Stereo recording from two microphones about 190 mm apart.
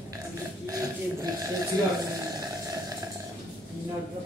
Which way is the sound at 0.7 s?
20° right (ahead or behind).